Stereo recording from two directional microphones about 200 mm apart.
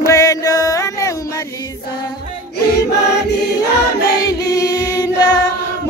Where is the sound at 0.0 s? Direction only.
15° left (ahead or behind).